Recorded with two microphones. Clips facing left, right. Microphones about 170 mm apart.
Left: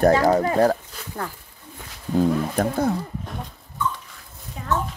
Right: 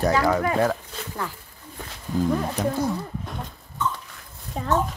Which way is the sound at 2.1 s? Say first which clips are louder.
Left 3 dB; 55° left (ahead or behind).